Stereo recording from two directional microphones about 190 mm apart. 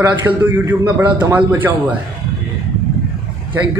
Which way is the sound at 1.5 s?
10° right (ahead or behind).